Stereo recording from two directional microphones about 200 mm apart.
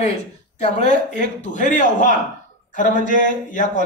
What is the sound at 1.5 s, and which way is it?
Speech, 40° left (ahead or behind).